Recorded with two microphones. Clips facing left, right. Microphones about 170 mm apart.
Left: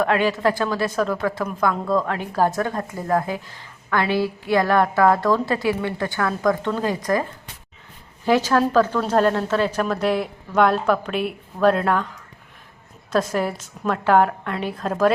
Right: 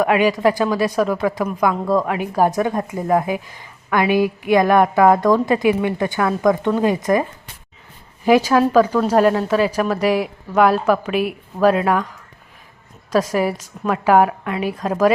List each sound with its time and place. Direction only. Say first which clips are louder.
0.0 s a woman's voice: right 4 dB; 10° right (ahead or behind)
13.1 s a woman's voice: right 4 dB; 10° right (ahead or behind)